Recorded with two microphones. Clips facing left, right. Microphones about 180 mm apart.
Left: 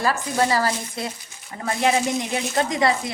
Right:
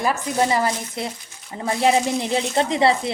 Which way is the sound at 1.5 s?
20° right (ahead or behind).